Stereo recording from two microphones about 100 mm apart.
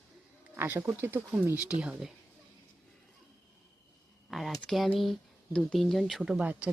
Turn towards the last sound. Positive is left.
turn(degrees=-5)  # may be behind; listen again after turning